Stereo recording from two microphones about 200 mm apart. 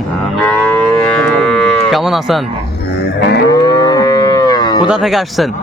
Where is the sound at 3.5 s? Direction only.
20° left (ahead or behind).